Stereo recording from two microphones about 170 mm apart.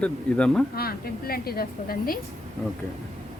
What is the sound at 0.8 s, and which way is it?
A woman's voice, 65° left (ahead or behind).